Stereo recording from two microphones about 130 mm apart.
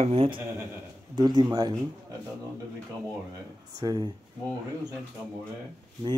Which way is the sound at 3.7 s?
30° right (ahead or behind).